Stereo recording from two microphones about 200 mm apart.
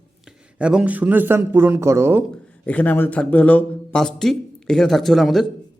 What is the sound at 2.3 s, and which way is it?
A man's voice, 5° left (ahead or behind).